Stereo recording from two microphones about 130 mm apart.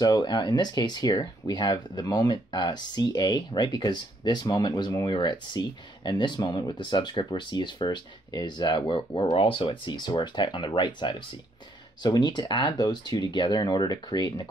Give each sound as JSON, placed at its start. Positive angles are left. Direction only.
{"t": 0.0, "sound": "speech", "side_deg": 30}